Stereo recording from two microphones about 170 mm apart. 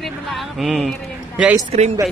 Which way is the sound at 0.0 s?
Centre (ahead or behind).